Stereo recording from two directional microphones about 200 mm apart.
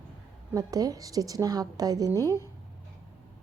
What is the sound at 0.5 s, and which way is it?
A woman's voice, 20° right (ahead or behind).